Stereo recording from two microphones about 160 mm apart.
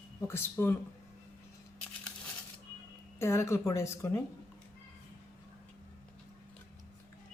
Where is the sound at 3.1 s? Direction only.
15° left (ahead or behind).